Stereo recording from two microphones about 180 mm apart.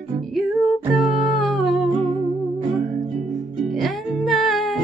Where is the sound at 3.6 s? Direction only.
Centre (ahead or behind).